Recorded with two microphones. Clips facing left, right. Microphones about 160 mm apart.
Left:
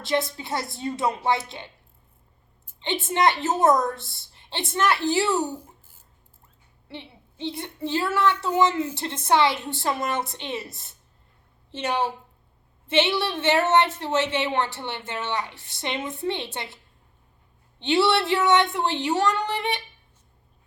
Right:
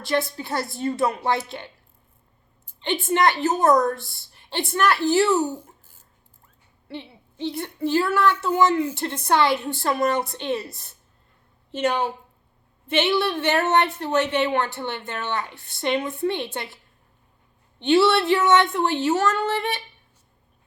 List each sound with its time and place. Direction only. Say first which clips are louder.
0.0 s a woman's voice: right 1 dB; 20° left (ahead or behind)
2.8 s a woman's voice: right 2 dB; 20° left (ahead or behind)
7.4 s a woman's voice: right 4 dB; 20° left (ahead or behind)
12.9 s a woman's voice: right 1 dB; 20° left (ahead or behind)
17.7 s a woman's voice: right 3 dB; 20° left (ahead or behind)